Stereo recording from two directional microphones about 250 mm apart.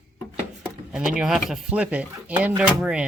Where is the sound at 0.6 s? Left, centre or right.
Centre.